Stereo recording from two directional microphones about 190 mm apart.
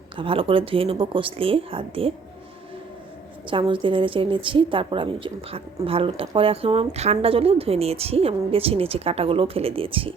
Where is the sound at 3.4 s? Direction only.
25° right (ahead or behind).